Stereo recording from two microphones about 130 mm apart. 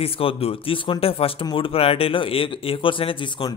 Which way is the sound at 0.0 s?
45° left (ahead or behind).